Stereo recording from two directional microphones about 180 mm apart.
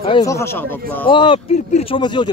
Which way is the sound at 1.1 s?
25° left (ahead or behind).